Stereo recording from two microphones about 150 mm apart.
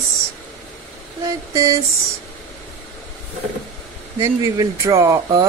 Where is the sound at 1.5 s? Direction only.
25° right (ahead or behind).